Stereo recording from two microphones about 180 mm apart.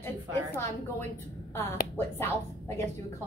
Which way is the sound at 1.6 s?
15° left (ahead or behind).